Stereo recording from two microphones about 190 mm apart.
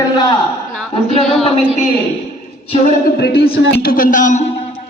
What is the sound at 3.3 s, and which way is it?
A man's voice, 55° left (ahead or behind).